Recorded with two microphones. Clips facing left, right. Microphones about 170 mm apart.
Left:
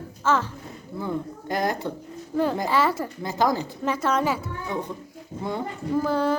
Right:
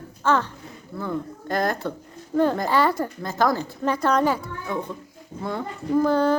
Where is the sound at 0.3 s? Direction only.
5° left (ahead or behind).